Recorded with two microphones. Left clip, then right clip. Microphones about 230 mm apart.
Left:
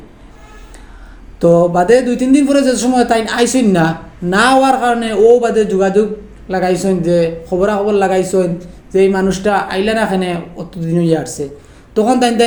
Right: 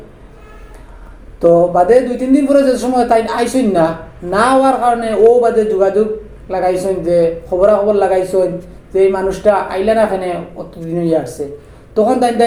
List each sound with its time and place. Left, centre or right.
1.4 s a man's voice: left